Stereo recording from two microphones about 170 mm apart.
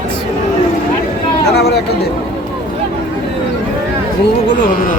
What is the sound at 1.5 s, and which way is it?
Speech, 75° left (ahead or behind).